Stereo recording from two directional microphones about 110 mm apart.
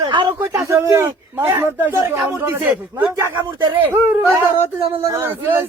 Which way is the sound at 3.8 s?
15° right (ahead or behind).